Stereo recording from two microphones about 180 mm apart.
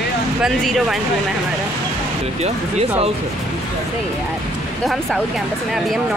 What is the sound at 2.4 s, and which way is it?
Speech, 35° right (ahead or behind).